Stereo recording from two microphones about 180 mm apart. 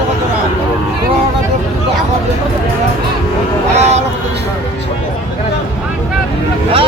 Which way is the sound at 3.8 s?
40° right (ahead or behind).